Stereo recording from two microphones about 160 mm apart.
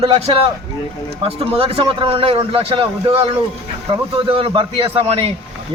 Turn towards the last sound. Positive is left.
turn(degrees=-40)  # may be behind; listen again after turning